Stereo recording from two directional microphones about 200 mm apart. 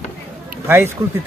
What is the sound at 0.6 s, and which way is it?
Speech, 10° right (ahead or behind).